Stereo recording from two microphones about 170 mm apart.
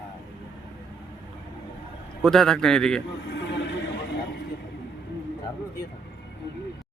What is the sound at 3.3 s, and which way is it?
Neigh, 90° left.